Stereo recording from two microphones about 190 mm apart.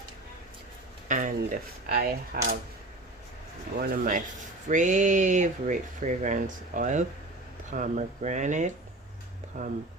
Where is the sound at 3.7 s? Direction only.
50° right (ahead or behind).